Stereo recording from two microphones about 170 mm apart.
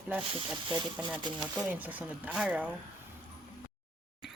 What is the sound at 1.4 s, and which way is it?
Speech, 5° right (ahead or behind).